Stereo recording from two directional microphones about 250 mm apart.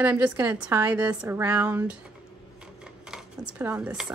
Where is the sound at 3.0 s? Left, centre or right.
Centre.